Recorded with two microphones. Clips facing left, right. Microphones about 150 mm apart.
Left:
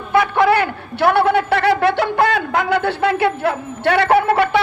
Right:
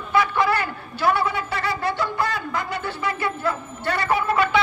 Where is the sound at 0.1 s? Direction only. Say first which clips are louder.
Left 6 dB; 60° left (ahead or behind).